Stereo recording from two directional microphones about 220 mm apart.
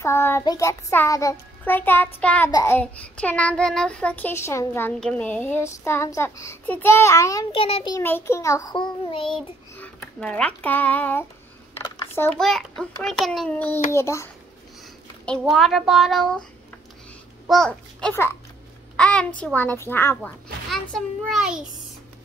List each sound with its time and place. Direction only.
0.0 s a child's voice: 10° left (ahead or behind)
8.0 s a child's voice: 10° left (ahead or behind)
9.8 s a child's voice: 5° left (ahead or behind)
11.7 s typing: 10° left (ahead or behind)
13.0 s a child's voice: centre (ahead or behind)
15.2 s a child's voice: centre (ahead or behind)
17.5 s a child's voice: 5° left (ahead or behind)